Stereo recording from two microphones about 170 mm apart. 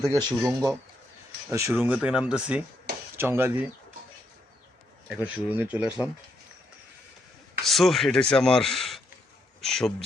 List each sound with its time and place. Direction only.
0.0 s speech: 20° right (ahead or behind)
0.4 s speech: 5° right (ahead or behind)
1.5 s speech: 15° right (ahead or behind)
5.0 s speech: 5° right (ahead or behind)
7.6 s a man's voice: centre (ahead or behind)